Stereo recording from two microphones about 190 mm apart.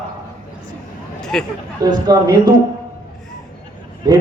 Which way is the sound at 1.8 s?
20° right (ahead or behind).